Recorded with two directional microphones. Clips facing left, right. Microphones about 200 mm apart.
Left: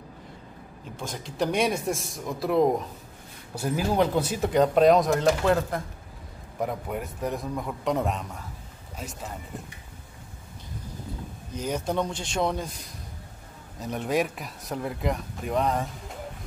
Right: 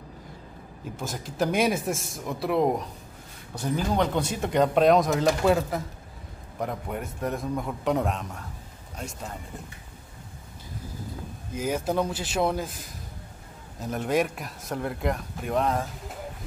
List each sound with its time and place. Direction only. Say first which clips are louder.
1.0 s speech: even; 5° right (ahead or behind)
11.5 s speech: right 2 dB; 5° right (ahead or behind)